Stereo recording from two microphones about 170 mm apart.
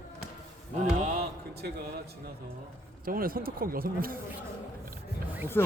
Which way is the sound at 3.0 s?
60° right (ahead or behind).